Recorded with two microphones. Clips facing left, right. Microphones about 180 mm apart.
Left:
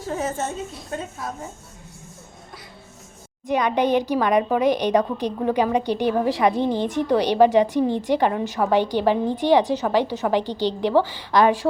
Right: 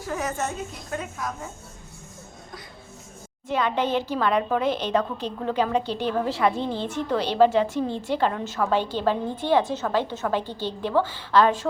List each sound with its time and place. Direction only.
0.0 s a woman's voice: 30° left (ahead or behind)
3.4 s a woman's voice: 15° left (ahead or behind)